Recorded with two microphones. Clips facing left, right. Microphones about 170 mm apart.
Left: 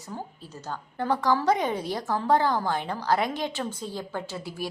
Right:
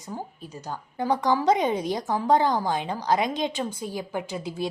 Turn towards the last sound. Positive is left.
turn(degrees=-20)  # may be behind; listen again after turning